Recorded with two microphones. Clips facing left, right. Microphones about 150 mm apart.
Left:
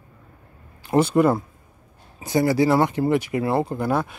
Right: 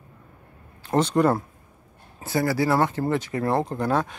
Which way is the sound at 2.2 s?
20° left (ahead or behind).